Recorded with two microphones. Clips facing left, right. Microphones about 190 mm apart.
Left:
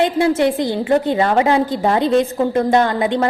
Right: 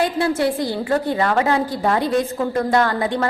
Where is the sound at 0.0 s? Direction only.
20° left (ahead or behind).